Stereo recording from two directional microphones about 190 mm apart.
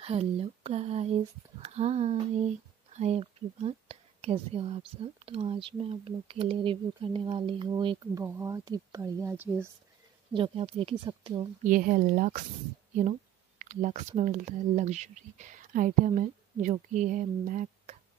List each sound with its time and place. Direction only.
0.0 s speech: 30° right (ahead or behind); by 9.7 s 10° right (ahead or behind)
10.3 s speech: 30° right (ahead or behind)
11.6 s speech: 45° right (ahead or behind)
13.6 s speech: 40° right (ahead or behind)